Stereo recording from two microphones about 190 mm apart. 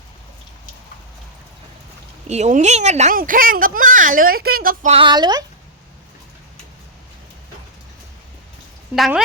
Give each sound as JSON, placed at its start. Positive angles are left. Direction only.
{"t": 2.2, "sound": "speech", "side_deg": -35}
{"t": 4.9, "sound": "speech", "side_deg": -25}
{"t": 9.0, "sound": "speech", "side_deg": 0}